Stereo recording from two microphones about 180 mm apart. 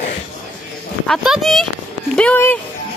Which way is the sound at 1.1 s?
Centre (ahead or behind).